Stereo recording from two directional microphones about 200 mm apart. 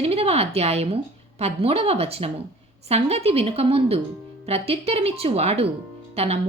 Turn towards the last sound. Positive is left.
turn(degrees=-30)  # may be behind; listen again after turning